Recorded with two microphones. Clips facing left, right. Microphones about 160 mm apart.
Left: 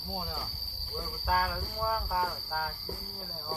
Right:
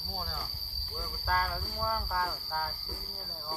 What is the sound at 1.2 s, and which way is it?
Cricket, 5° left (ahead or behind).